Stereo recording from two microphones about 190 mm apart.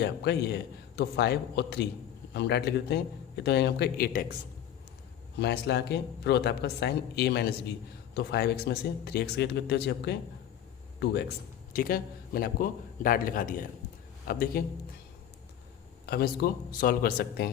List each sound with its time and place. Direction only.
0.0 s speech: 60° left (ahead or behind)
5.4 s speech: 60° left (ahead or behind)
11.7 s a man's voice: 50° left (ahead or behind)
16.0 s speech: 55° left (ahead or behind)